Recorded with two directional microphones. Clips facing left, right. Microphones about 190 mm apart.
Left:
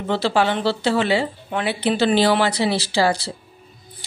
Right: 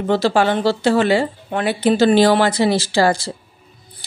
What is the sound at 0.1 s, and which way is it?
Speech, 45° right (ahead or behind).